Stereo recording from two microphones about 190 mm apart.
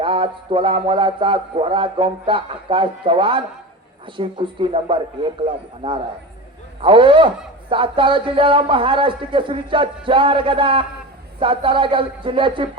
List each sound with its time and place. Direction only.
0.0 s speech: 25° right (ahead or behind)